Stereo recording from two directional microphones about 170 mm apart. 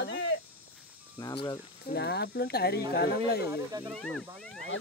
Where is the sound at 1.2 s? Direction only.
25° left (ahead or behind).